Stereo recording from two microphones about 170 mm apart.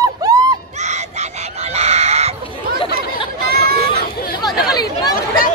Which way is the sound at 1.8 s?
40° right (ahead or behind).